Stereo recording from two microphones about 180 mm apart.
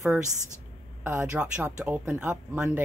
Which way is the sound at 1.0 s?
10° right (ahead or behind).